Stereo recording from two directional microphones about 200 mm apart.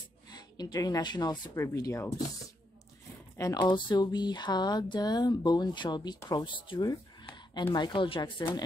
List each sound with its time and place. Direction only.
0.3 s speech: 20° left (ahead or behind)
3.3 s speech: 20° left (ahead or behind)